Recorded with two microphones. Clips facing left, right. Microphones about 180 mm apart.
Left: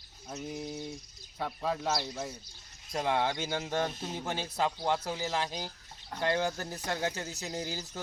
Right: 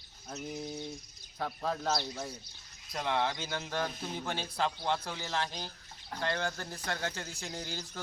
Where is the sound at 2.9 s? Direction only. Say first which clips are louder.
Left 2 dB; 20° left (ahead or behind).